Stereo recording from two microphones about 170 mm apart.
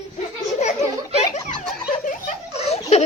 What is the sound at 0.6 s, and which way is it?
Speech, 40° left (ahead or behind).